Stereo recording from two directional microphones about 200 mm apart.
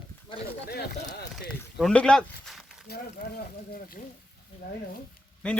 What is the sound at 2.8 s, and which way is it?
Speech, 50° left (ahead or behind).